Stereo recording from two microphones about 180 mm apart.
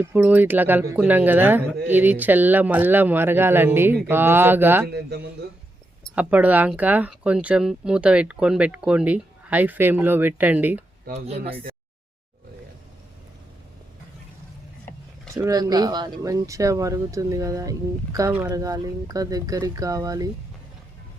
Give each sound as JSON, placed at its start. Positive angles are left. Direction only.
{"t": 0.0, "sound": "speech", "side_deg": -10}
{"t": 4.9, "sound": "a man's voice", "side_deg": -65}
{"t": 6.1, "sound": "speech", "side_deg": -10}
{"t": 15.4, "sound": "speech", "side_deg": -20}